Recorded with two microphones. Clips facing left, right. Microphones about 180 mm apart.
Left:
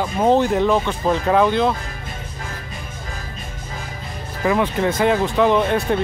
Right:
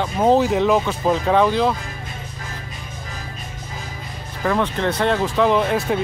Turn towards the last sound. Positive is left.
turn(degrees=0)  # may be behind; listen again after turning